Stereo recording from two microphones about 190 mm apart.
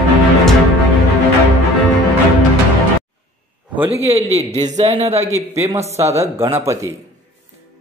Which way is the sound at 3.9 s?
30° right (ahead or behind).